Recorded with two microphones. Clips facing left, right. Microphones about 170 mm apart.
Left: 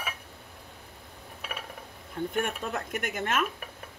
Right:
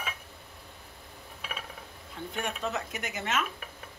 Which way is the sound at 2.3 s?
50° left (ahead or behind).